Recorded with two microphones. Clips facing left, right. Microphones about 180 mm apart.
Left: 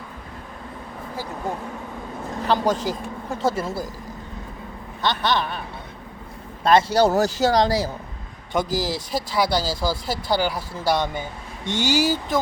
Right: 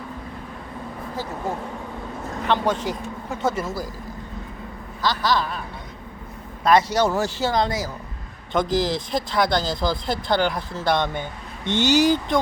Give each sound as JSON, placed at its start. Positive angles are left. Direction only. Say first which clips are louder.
{"t": 2.5, "sound": "speech", "louder": "left 1 dB", "side_deg": 35}
{"t": 5.0, "sound": "a man's voice", "louder": "even", "side_deg": 25}
{"t": 6.7, "sound": "speech", "louder": "left 1 dB", "side_deg": 25}
{"t": 8.5, "sound": "speech", "louder": "right 2 dB", "side_deg": 10}